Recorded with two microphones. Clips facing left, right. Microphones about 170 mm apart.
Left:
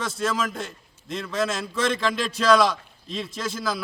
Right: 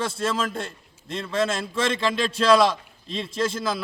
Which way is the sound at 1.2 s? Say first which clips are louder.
Right 2 dB; centre (ahead or behind).